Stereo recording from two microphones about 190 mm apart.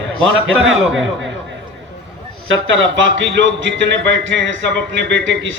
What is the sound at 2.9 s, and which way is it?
A man's voice, 80° right.